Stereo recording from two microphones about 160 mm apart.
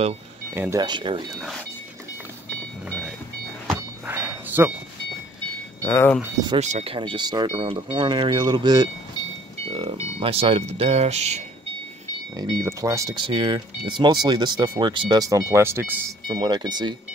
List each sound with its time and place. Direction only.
0.6 s speech: 15° right (ahead or behind)
0.8 s speech: 30° right (ahead or behind)
4.1 s a sound: 10° right (ahead or behind)
5.8 s speech: 15° left (ahead or behind)
6.6 s speech: 40° right (ahead or behind)
12.4 s speech: 25° right (ahead or behind)
16.3 s speech: 30° right (ahead or behind)